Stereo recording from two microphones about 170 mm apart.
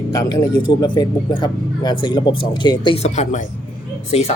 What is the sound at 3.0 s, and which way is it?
Speech, 45° left (ahead or behind).